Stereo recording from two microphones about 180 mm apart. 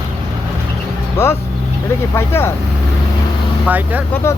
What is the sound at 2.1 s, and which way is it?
Speech, 15° left (ahead or behind).